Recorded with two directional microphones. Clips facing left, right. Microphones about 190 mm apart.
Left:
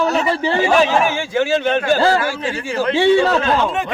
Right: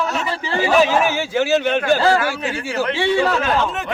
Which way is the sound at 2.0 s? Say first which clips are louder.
Left 1 dB; 30° left (ahead or behind).